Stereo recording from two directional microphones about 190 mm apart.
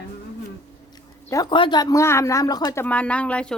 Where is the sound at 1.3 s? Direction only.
20° left (ahead or behind).